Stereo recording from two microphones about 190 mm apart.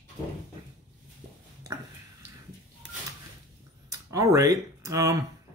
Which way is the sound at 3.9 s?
15° right (ahead or behind).